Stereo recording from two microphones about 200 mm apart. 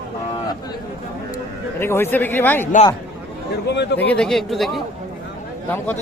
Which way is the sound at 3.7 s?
60° left (ahead or behind).